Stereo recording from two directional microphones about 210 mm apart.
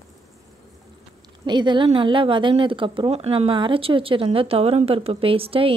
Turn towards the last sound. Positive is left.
turn(degrees=-25)  # may be behind; listen again after turning